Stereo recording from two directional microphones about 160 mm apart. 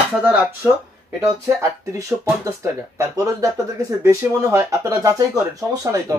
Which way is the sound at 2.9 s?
20° right (ahead or behind).